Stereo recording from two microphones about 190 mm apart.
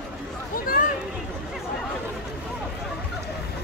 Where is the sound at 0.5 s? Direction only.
50° left (ahead or behind).